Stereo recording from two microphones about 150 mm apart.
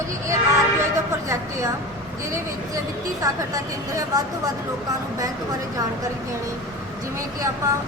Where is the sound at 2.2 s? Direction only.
20° right (ahead or behind).